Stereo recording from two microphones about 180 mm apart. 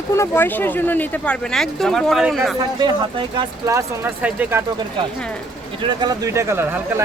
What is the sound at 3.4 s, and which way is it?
Speech, 15° right (ahead or behind).